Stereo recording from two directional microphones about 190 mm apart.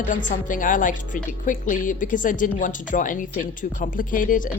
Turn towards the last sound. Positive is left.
turn(degrees=45)  # may be behind; listen again after turning